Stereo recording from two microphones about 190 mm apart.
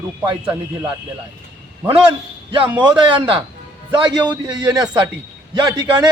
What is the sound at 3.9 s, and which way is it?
A man's voice, 20° right (ahead or behind).